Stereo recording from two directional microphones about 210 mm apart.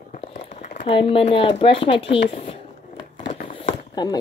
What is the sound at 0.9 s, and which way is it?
Speech, 25° left (ahead or behind).